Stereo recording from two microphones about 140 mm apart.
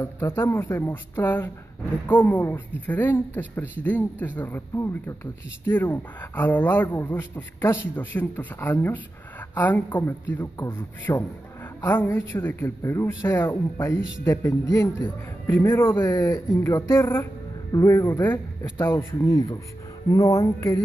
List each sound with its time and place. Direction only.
0.0 s a man's voice: 15° left (ahead or behind)